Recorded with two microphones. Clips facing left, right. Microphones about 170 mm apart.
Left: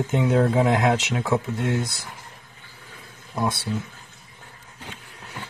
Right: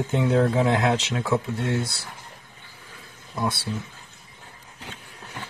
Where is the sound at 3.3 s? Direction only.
15° left (ahead or behind).